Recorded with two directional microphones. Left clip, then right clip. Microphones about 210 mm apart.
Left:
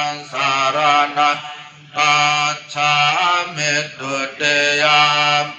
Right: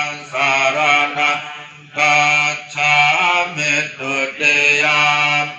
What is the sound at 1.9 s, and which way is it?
Mantra, 5° left (ahead or behind).